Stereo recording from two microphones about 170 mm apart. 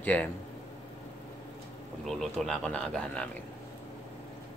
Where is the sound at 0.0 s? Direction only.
10° left (ahead or behind).